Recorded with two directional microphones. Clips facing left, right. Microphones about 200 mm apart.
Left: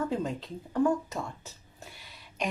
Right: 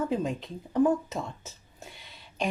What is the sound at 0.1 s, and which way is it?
Speech, 20° right (ahead or behind).